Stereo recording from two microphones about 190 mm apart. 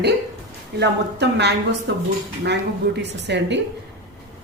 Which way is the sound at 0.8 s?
60° right (ahead or behind).